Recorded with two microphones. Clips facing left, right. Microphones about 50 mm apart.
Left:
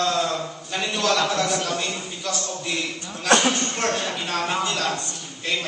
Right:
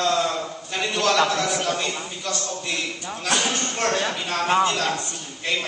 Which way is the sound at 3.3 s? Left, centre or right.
Left.